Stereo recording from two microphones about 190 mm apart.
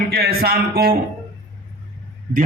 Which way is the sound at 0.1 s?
55° right (ahead or behind).